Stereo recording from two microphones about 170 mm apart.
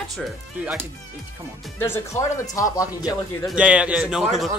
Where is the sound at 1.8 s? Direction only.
15° left (ahead or behind).